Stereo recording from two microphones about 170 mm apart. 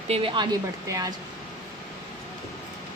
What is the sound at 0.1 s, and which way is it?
Speech, 30° right (ahead or behind).